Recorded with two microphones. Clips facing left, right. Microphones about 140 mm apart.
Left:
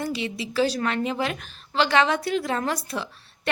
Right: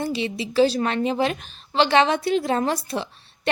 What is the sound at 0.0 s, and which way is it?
A woman's voice, 25° right (ahead or behind).